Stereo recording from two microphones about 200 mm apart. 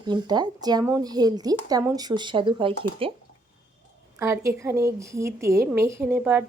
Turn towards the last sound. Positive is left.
turn(degrees=-10)  # may be behind; listen again after turning